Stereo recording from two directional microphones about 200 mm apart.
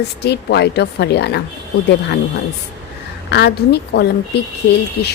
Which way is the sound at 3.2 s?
55° left (ahead or behind).